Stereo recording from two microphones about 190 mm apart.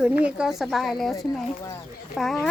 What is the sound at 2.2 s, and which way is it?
Speech, centre (ahead or behind).